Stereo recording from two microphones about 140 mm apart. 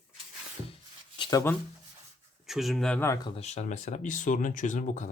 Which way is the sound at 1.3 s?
25° left (ahead or behind).